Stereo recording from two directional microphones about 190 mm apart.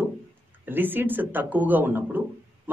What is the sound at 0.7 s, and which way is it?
A man's voice, 10° right (ahead or behind).